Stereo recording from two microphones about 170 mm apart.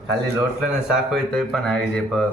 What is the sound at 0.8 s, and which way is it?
A woman's voice, 5° right (ahead or behind).